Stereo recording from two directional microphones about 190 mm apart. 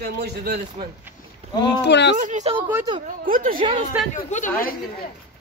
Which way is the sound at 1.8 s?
65° left (ahead or behind).